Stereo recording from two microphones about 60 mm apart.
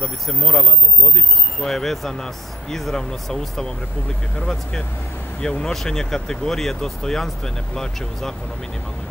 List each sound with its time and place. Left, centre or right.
0.0 s speech: centre